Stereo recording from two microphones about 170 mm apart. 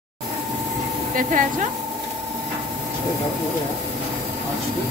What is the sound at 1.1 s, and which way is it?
Speech, 50° right (ahead or behind).